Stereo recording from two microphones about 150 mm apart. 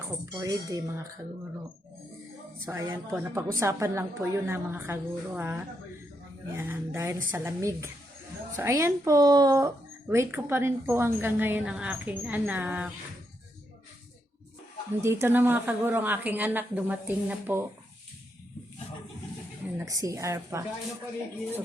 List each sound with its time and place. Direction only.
0.3 s speech: 25° right (ahead or behind)
2.6 s speech: 20° right (ahead or behind)
15.0 s speech: 15° right (ahead or behind)
19.8 s speech: 20° right (ahead or behind)